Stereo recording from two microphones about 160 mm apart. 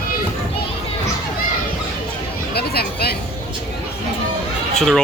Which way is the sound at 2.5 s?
80° left.